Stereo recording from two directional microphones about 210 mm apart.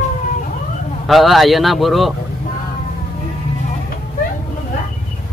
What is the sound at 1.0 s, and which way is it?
Speech, centre (ahead or behind).